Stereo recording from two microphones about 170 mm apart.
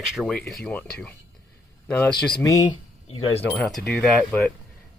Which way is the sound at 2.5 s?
30° left (ahead or behind).